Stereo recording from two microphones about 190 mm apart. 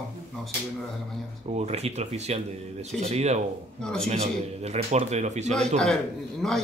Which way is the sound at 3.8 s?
5° left (ahead or behind).